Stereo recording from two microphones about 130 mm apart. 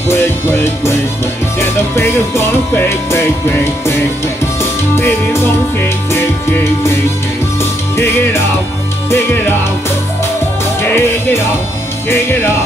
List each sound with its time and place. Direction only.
0.1 s music: 20° left (ahead or behind)
9.1 s music: 15° left (ahead or behind)
10.8 s music: 20° left (ahead or behind)